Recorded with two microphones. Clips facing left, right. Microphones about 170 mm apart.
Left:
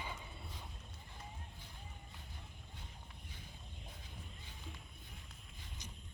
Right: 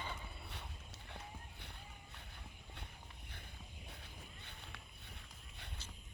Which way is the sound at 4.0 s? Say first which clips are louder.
Left 1 dB; 65° right (ahead or behind).